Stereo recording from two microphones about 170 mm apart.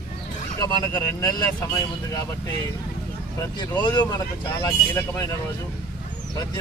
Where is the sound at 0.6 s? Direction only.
25° left (ahead or behind).